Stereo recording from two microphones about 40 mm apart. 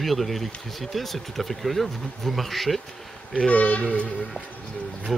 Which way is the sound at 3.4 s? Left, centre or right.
Left.